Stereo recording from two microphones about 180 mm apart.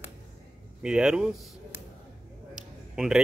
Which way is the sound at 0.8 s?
5° right (ahead or behind).